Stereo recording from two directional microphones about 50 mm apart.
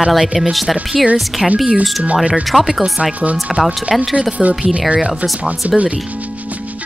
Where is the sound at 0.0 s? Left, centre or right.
Centre.